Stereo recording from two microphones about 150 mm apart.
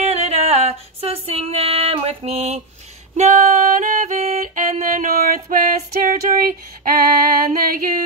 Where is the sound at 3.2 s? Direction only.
55° right (ahead or behind).